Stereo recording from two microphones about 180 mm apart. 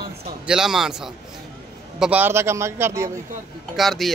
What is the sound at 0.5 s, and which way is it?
A man's voice, centre (ahead or behind).